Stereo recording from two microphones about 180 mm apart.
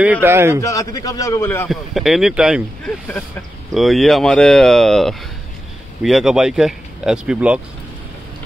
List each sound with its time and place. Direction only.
0.0 s a man's voice: 10° right (ahead or behind)
0.6 s a man's voice: 15° left (ahead or behind)
1.7 s speech: centre (ahead or behind)